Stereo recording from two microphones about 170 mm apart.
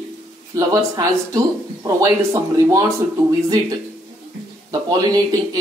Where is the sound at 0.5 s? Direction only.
20° right (ahead or behind).